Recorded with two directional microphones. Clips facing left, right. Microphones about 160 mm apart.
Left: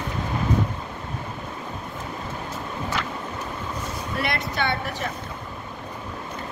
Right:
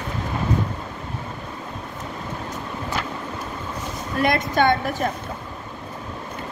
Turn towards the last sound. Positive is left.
turn(degrees=-45)  # may be behind; listen again after turning